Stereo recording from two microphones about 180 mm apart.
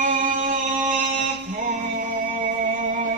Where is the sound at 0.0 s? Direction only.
45° right (ahead or behind).